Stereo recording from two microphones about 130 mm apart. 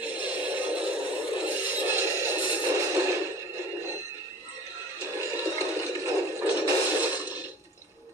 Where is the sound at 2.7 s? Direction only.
20° right (ahead or behind).